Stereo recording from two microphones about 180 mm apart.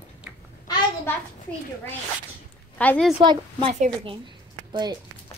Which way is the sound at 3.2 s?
25° right (ahead or behind).